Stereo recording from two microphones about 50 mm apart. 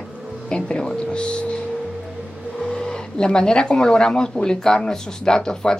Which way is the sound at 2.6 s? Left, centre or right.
Centre.